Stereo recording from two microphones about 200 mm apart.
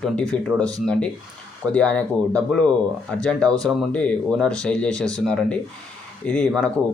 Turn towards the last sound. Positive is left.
turn(degrees=5)  # may be behind; listen again after turning